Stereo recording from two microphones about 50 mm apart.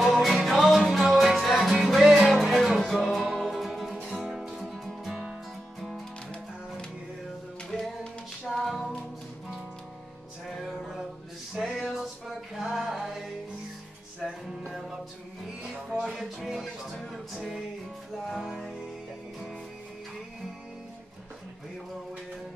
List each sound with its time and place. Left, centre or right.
0.0 s music: centre
7.7 s music: centre
10.5 s music: centre
14.6 s music: centre
15.6 s music: right
16.0 s music: centre
17.3 s music: centre